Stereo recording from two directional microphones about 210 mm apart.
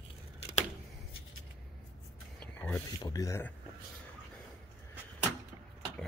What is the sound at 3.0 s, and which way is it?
Speech, 15° left (ahead or behind).